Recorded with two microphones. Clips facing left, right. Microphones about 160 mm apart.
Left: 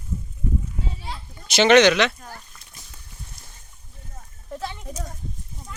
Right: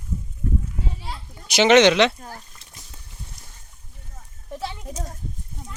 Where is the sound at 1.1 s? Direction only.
15° right (ahead or behind).